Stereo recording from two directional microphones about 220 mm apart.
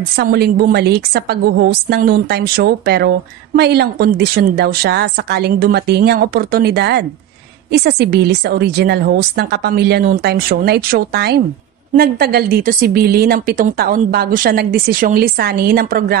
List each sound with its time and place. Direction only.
0.1 s a woman's voice: 45° right (ahead or behind)